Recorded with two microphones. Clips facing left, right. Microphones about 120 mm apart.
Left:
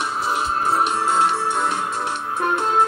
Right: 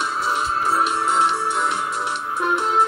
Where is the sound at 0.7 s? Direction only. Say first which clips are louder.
Left 1 dB; 25° left (ahead or behind).